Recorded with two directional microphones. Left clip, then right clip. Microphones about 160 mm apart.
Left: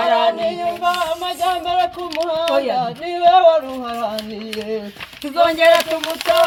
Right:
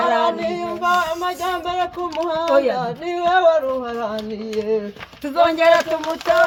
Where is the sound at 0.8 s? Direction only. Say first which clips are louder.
Right 2 dB; 25° right (ahead or behind).